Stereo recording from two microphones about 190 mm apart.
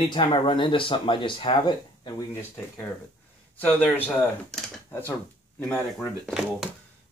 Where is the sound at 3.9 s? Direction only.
5° left (ahead or behind).